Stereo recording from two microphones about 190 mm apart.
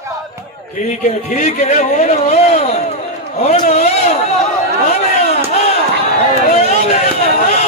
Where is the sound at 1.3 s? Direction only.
40° left (ahead or behind).